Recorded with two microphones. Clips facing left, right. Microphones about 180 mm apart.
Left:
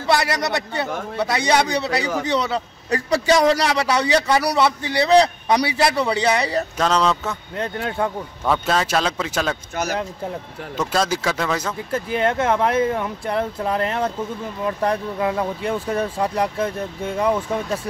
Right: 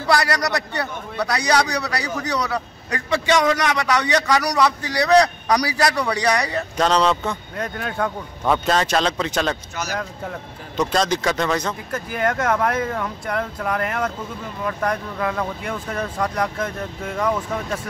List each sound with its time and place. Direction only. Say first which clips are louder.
0.0 s a man's voice: even; 25° left (ahead or behind)
6.8 s speech: right 2 dB; centre (ahead or behind)
7.5 s a man's voice: left 2 dB; 25° left (ahead or behind)
8.5 s speech: right 1 dB; 5° left (ahead or behind)
10.8 s speech: right 1 dB; 5° left (ahead or behind)
11.9 s a man's voice: left 3 dB; 25° left (ahead or behind)